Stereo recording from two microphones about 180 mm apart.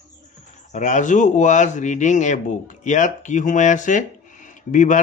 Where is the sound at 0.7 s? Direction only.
45° left (ahead or behind).